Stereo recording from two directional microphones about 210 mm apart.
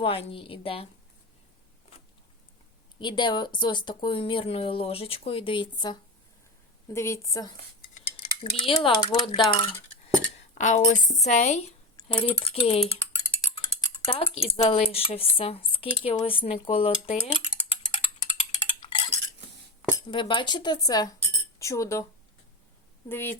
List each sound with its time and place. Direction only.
0.0 s speech: 25° left (ahead or behind)
3.0 s a woman's voice: 20° left (ahead or behind)
7.9 s cutlery: 25° left (ahead or behind)
10.6 s speech: 35° left (ahead or behind)
13.0 s mechanisms: 15° left (ahead or behind)
14.1 s speech: 30° left (ahead or behind)
18.3 s cutlery: 30° left (ahead or behind)
20.1 s a woman's voice: 25° left (ahead or behind)
23.0 s a woman's voice: 10° left (ahead or behind)